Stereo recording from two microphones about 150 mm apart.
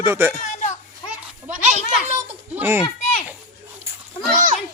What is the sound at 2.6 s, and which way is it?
Speech, 15° right (ahead or behind).